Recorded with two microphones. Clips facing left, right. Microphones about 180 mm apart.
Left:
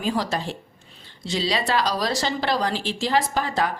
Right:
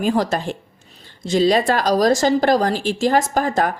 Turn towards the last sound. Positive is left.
turn(degrees=-45)  # may be behind; listen again after turning